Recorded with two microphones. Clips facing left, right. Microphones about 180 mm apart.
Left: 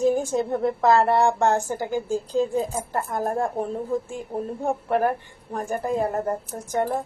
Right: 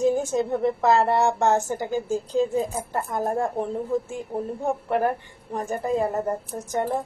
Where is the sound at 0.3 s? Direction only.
15° right (ahead or behind).